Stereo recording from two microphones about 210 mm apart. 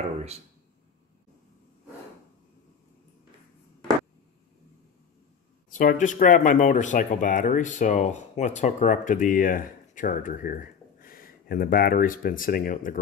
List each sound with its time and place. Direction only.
5.7 s speech: 40° left (ahead or behind)